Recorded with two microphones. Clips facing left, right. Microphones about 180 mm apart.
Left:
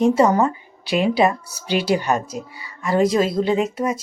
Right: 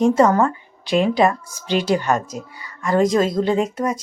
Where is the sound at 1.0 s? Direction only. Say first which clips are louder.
Left 2 dB; 10° left (ahead or behind).